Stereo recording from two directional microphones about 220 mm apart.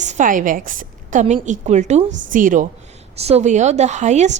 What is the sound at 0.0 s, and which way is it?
A woman's voice, 35° right (ahead or behind).